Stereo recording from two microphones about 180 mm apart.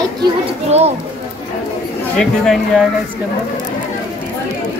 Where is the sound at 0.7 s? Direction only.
35° right (ahead or behind).